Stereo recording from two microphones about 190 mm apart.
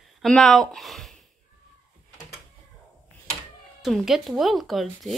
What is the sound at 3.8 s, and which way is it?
Speech, centre (ahead or behind).